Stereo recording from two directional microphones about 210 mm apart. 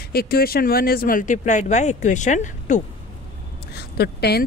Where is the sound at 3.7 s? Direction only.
50° left (ahead or behind).